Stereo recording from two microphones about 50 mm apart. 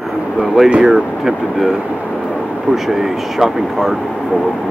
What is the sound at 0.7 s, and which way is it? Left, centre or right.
Speech, centre.